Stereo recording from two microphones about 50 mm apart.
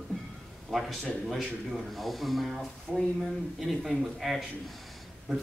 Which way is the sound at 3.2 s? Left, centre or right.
Centre.